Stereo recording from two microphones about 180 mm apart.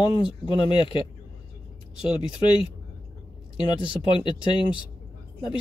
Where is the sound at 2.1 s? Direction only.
30° left (ahead or behind).